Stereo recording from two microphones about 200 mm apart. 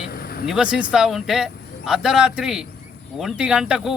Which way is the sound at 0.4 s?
5° right (ahead or behind).